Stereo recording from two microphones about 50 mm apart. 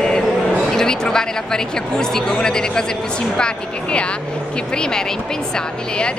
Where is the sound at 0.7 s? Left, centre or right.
Centre.